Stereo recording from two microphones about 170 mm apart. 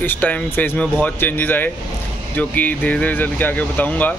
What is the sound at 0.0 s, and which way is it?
Speech, 10° left (ahead or behind).